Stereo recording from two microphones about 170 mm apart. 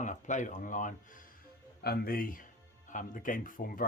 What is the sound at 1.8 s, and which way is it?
Speech, 65° left (ahead or behind).